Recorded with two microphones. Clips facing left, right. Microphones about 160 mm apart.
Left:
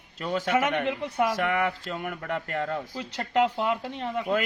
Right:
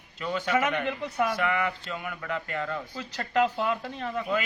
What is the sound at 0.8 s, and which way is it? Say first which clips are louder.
Speech: left 2 dB; 25° left (ahead or behind).